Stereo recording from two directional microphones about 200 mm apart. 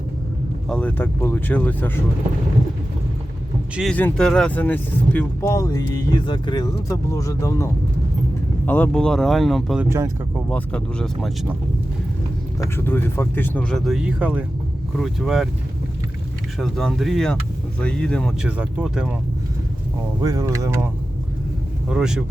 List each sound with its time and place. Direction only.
0.7 s speech: 5° left (ahead or behind)
3.8 s speech: 5° left (ahead or behind)
12.5 s speech: 15° left (ahead or behind)
16.6 s speech: centre (ahead or behind)
20.2 s speech: 15° right (ahead or behind)
21.8 s speech: 5° right (ahead or behind)